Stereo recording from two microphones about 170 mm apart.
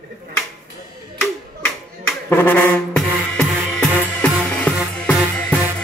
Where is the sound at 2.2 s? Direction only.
10° left (ahead or behind).